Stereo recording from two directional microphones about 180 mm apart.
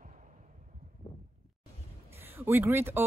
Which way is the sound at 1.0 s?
20° left (ahead or behind).